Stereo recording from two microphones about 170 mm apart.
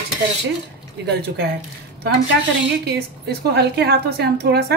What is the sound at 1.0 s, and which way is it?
Speech, 75° right (ahead or behind).